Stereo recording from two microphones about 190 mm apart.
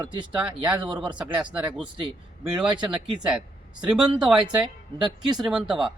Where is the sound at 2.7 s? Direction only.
25° right (ahead or behind).